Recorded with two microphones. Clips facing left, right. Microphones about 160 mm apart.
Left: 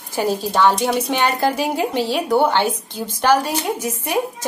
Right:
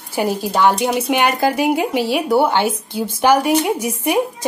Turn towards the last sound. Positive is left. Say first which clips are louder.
# right 4 dB
turn(degrees=-10)  # may be behind; listen again after turning